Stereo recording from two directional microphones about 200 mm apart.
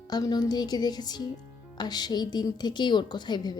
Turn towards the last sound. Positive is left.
turn(degrees=20)  # may be behind; listen again after turning